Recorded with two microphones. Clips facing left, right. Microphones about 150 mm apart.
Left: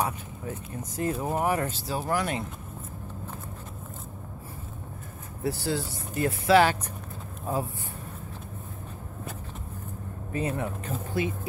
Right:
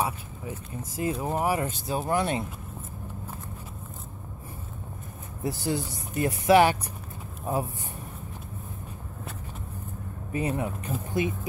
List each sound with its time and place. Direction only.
0.0 s speech: 10° right (ahead or behind)
1.1 s speech: centre (ahead or behind); by 2.4 s 25° right (ahead or behind)
5.4 s speech: 15° right (ahead or behind)
10.3 s speech: 15° right (ahead or behind)